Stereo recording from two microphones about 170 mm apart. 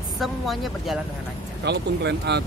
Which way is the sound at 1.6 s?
85° right.